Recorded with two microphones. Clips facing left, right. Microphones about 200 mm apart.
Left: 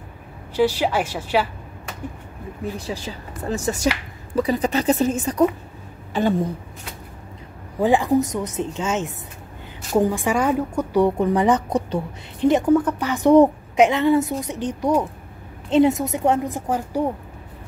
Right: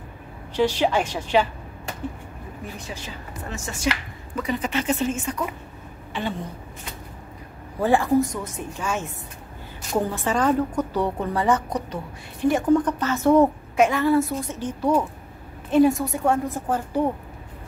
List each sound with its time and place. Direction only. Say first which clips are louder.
0.6 s a woman's voice: left 1 dB; 10° left (ahead or behind)
3.4 s a woman's voice: left 5 dB; 35° left (ahead or behind)
7.8 s a woman's voice: left 2 dB; 15° left (ahead or behind)